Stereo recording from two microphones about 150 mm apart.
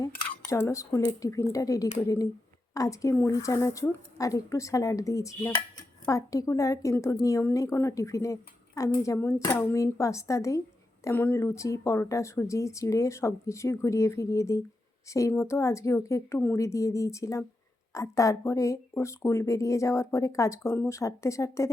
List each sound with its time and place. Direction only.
0.0 s speech: 20° left (ahead or behind)